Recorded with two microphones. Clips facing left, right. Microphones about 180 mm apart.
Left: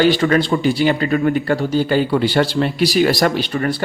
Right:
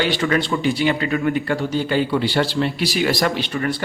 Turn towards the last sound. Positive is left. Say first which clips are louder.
# left 3 dB
turn(degrees=40)  # may be behind; listen again after turning